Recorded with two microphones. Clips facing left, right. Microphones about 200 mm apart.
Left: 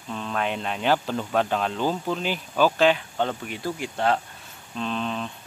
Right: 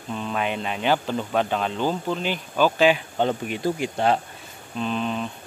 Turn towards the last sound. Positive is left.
turn(degrees=-5)  # may be behind; listen again after turning